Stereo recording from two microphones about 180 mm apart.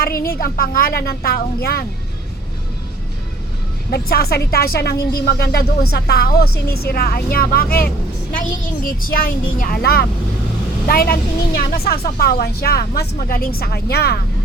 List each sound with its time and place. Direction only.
0.0 s a woman's voice: 55° left (ahead or behind)
3.9 s a woman's voice: 60° left (ahead or behind)